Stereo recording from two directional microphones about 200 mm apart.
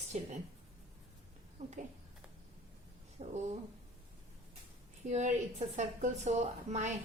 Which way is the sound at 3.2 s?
35° right (ahead or behind).